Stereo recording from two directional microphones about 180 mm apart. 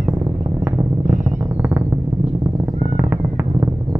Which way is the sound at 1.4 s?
10° right (ahead or behind).